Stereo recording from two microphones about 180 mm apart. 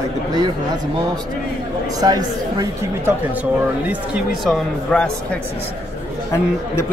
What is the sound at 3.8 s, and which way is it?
Speech, 5° right (ahead or behind).